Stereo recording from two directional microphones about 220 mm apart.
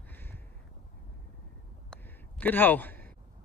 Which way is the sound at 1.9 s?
10° left (ahead or behind).